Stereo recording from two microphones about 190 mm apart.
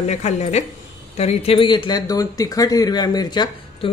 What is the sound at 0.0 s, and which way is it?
Speech, 35° left (ahead or behind).